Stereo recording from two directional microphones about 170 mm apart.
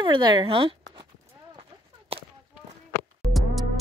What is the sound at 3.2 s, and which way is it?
Music, centre (ahead or behind).